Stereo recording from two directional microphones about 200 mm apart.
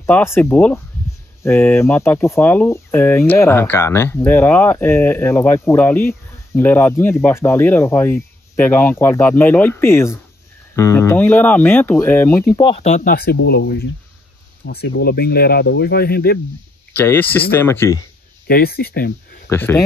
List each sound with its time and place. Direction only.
0.0 s speech: 10° left (ahead or behind)
12.5 s speech: 25° left (ahead or behind); by 16.3 s 50° left (ahead or behind)
16.9 s speech: 10° left (ahead or behind)
18.5 s speech: 50° left (ahead or behind)
19.5 s speech: 10° left (ahead or behind)